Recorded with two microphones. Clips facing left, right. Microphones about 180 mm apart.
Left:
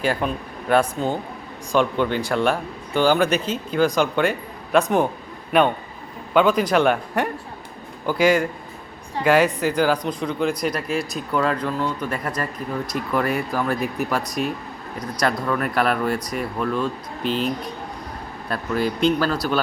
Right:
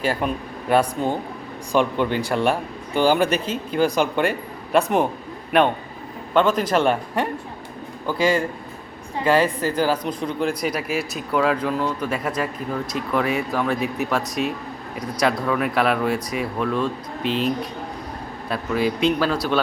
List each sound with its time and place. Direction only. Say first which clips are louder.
0.0 s speech: even; 5° right (ahead or behind)
6.3 s speech: left 1 dB; 5° left (ahead or behind)
8.2 s a man's voice: left 2 dB; 30° right (ahead or behind)
9.6 s speech: left 1 dB; 5° right (ahead or behind)